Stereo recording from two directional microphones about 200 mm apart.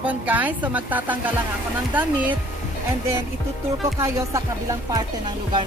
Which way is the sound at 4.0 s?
15° right (ahead or behind).